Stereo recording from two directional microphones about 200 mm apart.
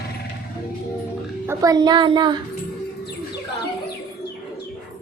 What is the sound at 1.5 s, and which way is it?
Speech, 20° right (ahead or behind).